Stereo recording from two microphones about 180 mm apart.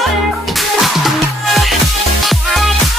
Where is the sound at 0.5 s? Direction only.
Centre (ahead or behind).